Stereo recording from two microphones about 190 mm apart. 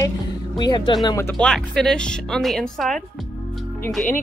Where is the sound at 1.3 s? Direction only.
5° left (ahead or behind).